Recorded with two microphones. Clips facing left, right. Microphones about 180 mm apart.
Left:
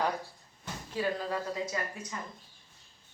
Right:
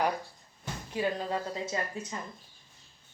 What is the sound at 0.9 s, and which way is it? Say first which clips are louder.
Speech: right 1 dB; 25° right (ahead or behind).